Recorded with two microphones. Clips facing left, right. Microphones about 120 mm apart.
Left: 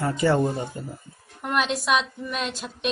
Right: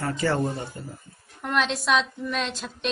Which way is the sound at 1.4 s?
5° left (ahead or behind).